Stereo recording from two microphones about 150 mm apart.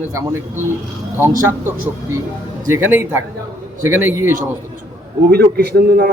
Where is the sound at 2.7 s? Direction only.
15° right (ahead or behind).